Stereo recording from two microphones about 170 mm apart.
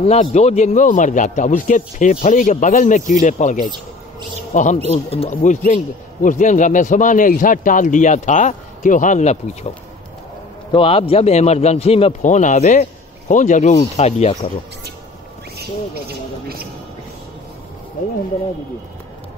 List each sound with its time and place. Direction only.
0.0 s a man's voice: 40° left (ahead or behind)
4.8 s a man's voice: 35° left (ahead or behind)
10.7 s a man's voice: 30° left (ahead or behind)
15.5 s a sound: 65° right (ahead or behind)